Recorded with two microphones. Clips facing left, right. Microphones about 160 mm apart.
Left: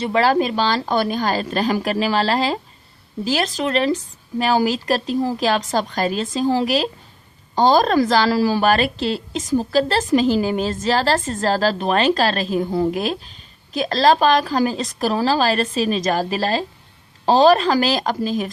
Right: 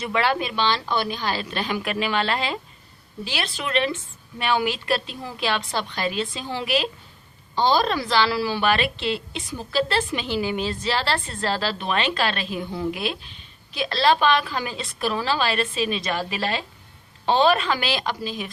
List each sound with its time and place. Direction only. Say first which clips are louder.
0.0 s a woman's voice: left 6 dB; 35° left (ahead or behind)